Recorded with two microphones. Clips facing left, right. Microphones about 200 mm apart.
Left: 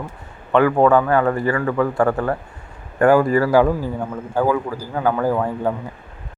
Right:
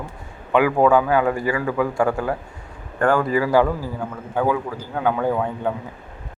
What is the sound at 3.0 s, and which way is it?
Speech, 5° left (ahead or behind).